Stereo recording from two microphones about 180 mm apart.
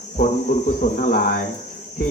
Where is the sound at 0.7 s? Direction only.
50° left (ahead or behind).